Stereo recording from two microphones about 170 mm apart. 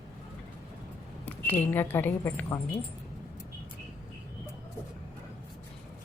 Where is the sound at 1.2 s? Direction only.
10° left (ahead or behind).